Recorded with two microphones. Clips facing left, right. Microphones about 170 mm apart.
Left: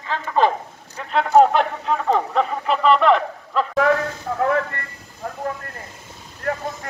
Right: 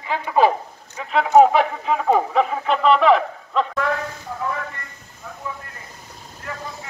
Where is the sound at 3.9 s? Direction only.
60° left (ahead or behind).